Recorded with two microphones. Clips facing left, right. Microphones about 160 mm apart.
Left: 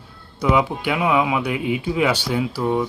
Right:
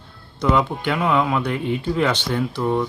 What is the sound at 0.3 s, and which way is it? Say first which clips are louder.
Speech: even; 5° left (ahead or behind).